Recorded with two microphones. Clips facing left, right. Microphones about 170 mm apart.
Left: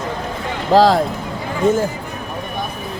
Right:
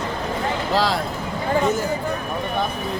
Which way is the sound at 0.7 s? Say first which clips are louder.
Left 11 dB; 45° left (ahead or behind).